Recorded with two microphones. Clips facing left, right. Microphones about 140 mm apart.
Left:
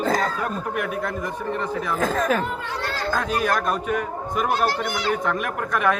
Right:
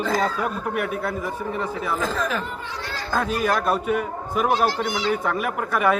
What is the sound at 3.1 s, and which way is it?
A man's voice, 5° right (ahead or behind).